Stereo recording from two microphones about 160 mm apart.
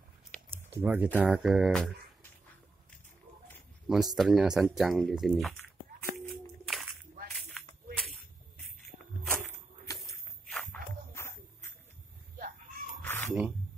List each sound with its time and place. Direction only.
0.7 s speech: 10° right (ahead or behind)
3.9 s speech: centre (ahead or behind)
6.3 s a sound: centre (ahead or behind)
9.9 s walk: centre (ahead or behind)
11.1 s music: 15° left (ahead or behind)
12.4 s a sound: 60° right (ahead or behind)
13.0 s cat: 15° left (ahead or behind)